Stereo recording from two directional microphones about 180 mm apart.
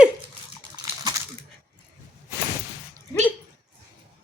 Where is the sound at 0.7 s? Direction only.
20° right (ahead or behind).